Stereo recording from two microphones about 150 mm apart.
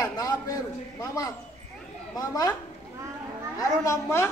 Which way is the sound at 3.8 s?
20° left (ahead or behind).